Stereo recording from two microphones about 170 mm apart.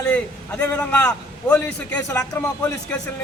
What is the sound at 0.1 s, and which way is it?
A man's voice, 10° left (ahead or behind).